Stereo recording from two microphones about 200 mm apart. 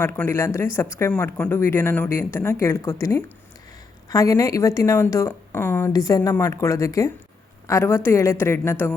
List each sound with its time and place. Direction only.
0.0 s speech: 15° left (ahead or behind)